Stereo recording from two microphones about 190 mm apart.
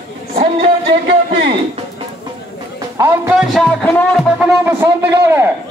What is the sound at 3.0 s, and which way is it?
Speech, 10° right (ahead or behind).